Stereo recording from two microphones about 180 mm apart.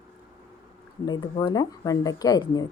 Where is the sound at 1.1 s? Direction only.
25° left (ahead or behind).